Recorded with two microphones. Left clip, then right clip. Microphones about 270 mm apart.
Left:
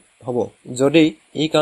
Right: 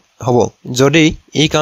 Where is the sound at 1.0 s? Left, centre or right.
Right.